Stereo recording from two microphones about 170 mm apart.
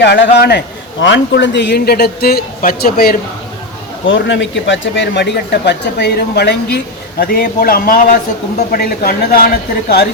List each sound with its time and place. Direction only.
0.0 s a man's voice: 75° left (ahead or behind)
1.0 s a man's voice: 90° left; by 3.2 s 60° left (ahead or behind)
4.1 s speech: 90° left; by 6.7 s 75° left (ahead or behind)
7.2 s a man's voice: 60° left (ahead or behind)